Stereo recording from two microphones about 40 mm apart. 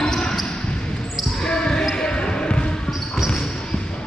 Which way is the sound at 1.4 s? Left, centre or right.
Centre.